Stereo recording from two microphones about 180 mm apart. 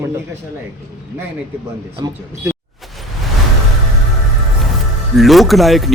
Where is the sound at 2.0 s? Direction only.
20° right (ahead or behind).